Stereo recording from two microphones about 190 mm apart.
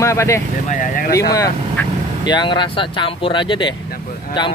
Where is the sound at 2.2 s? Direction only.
25° left (ahead or behind).